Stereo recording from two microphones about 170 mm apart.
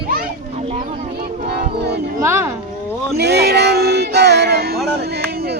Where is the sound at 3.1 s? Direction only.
75° right (ahead or behind).